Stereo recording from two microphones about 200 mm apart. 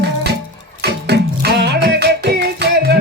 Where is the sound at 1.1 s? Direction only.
55° right (ahead or behind).